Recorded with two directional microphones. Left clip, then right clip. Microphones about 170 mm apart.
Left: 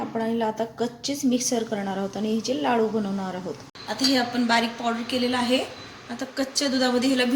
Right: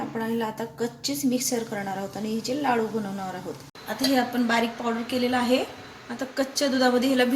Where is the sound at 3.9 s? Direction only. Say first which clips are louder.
Left 1 dB; 50° right (ahead or behind).